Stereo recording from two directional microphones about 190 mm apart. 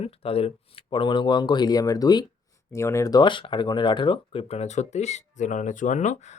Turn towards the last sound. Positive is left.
turn(degrees=40)  # may be behind; listen again after turning